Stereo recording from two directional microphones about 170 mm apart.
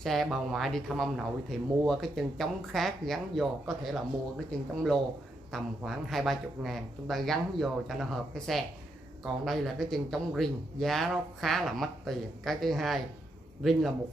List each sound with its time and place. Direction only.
0.0 s speech: centre (ahead or behind)
5.5 s speech: centre (ahead or behind)